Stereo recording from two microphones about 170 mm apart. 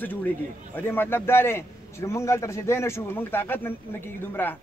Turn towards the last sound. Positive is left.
turn(degrees=10)  # may be behind; listen again after turning